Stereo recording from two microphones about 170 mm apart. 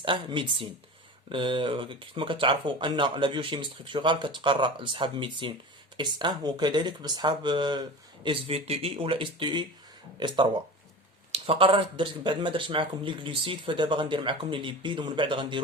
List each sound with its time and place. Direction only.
0.0 s speech: 30° right (ahead or behind)